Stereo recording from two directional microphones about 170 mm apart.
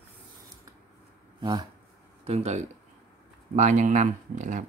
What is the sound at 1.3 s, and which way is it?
Speech, 25° right (ahead or behind).